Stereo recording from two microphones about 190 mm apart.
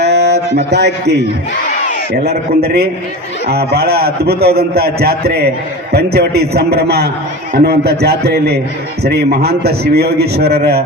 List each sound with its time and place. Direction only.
0.0 s a sound: 60° right (ahead or behind)
0.7 s a man's voice: 65° right (ahead or behind)
2.2 s a man's voice: 55° right (ahead or behind)